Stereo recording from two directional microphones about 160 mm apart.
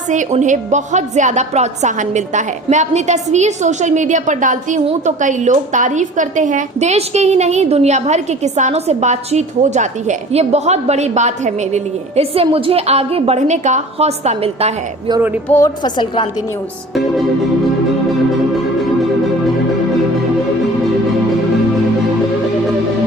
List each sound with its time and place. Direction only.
0.1 s a woman's voice: 50° right (ahead or behind)
15.4 s a woman's voice: 15° left (ahead or behind)
15.8 s a woman's voice: 30° left (ahead or behind)